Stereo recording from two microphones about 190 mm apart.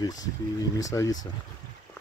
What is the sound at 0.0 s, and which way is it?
Speech, 20° left (ahead or behind).